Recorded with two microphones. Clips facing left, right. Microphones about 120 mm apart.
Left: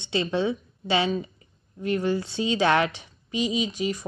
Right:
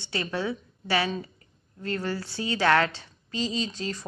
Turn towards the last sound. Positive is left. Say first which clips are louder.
# left 4 dB
turn(degrees=15)  # may be behind; listen again after turning